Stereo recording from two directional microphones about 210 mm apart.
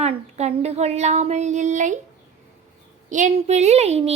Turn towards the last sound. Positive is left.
turn(degrees=-30)  # may be behind; listen again after turning